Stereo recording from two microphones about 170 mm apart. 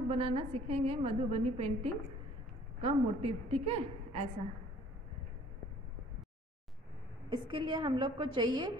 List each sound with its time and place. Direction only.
0.1 s a woman's voice: 35° right (ahead or behind)
7.2 s a woman's voice: 30° right (ahead or behind)